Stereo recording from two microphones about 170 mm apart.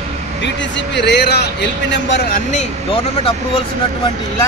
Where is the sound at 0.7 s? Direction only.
90° left.